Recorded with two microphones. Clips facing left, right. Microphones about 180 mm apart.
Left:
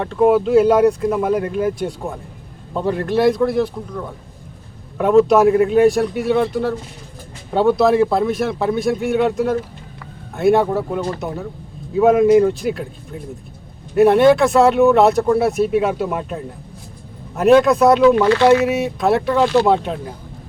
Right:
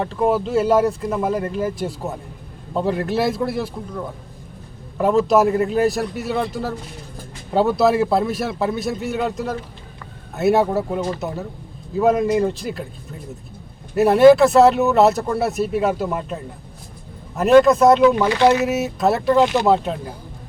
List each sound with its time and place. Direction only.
0.2 s speech: centre (ahead or behind)
4.9 s speech: centre (ahead or behind)
7.8 s speech: 5° right (ahead or behind)
13.9 s speech: 5° right (ahead or behind)
18.2 s speech: 15° right (ahead or behind)
18.4 s speech: centre (ahead or behind)
19.4 s speech: 20° right (ahead or behind)
19.6 s speech: centre (ahead or behind)